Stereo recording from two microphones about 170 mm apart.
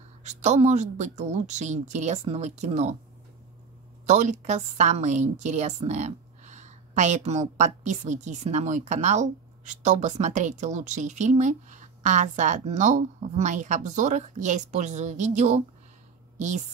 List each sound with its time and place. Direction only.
0.2 s a woman's voice: 45° right (ahead or behind)
4.0 s a woman's voice: 45° right (ahead or behind)